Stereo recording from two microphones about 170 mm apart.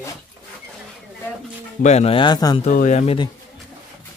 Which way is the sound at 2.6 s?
45° left (ahead or behind).